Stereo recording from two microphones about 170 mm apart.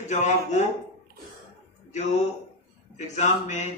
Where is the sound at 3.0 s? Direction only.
45° left (ahead or behind).